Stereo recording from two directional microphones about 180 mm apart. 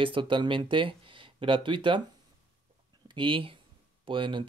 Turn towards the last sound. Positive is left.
turn(degrees=-25)  # may be behind; listen again after turning